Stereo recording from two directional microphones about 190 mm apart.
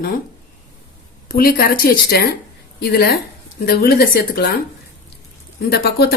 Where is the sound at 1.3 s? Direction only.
50° left (ahead or behind).